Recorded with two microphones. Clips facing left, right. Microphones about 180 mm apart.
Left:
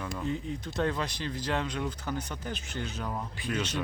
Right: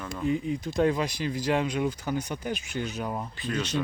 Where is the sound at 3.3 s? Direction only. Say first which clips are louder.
Right 2 dB; 10° left (ahead or behind).